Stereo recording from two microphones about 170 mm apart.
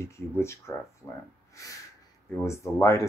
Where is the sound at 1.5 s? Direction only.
20° left (ahead or behind).